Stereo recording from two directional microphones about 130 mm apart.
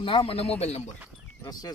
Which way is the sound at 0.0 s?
40° left (ahead or behind).